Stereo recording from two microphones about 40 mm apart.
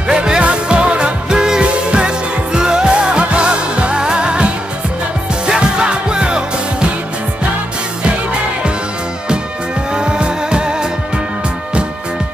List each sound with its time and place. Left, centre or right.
0.1 s music: right
5.6 s music: right
9.9 s music: right